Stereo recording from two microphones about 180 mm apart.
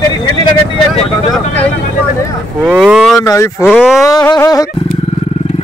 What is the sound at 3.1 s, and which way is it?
Speech, 15° left (ahead or behind).